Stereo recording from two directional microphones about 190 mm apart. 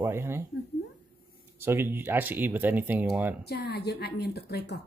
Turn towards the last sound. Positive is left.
turn(degrees=60)  # may be behind; listen again after turning